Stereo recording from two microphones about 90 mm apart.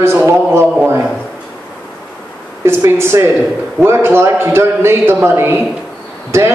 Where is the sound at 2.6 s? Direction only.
30° right (ahead or behind).